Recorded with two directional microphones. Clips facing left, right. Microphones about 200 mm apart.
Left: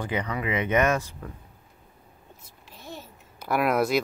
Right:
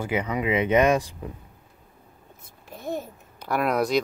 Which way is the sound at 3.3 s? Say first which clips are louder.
Even; 5° left (ahead or behind).